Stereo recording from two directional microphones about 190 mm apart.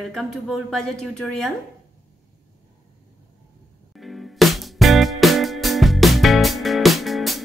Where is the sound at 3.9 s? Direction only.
Centre (ahead or behind).